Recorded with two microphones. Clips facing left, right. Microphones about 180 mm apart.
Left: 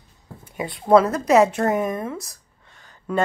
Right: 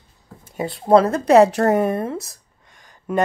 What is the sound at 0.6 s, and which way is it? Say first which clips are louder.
A woman's voice: right 1 dB; 30° right (ahead or behind).